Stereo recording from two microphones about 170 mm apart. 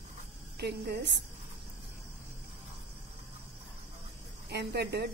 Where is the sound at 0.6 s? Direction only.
75° right (ahead or behind).